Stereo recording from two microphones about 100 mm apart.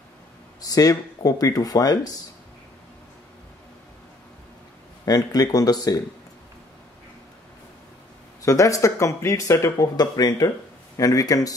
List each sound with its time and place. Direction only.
0.6 s speech: 40° left (ahead or behind)
5.0 s speech: 40° left (ahead or behind)
8.4 s speech: 35° left (ahead or behind)